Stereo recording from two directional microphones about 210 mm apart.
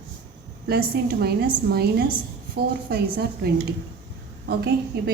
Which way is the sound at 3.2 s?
50° right (ahead or behind).